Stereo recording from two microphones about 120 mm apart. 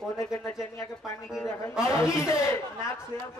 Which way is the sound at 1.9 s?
25° left (ahead or behind).